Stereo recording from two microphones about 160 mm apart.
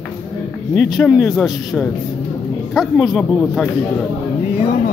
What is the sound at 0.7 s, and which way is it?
Speech, centre (ahead or behind).